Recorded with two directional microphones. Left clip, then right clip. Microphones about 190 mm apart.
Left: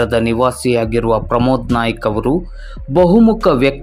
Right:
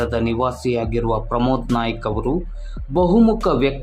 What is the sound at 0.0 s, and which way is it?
Speech, 20° left (ahead or behind).